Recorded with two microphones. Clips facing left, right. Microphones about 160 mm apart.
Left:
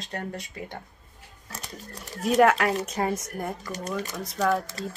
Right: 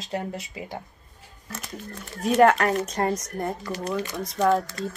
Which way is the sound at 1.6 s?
35° left (ahead or behind).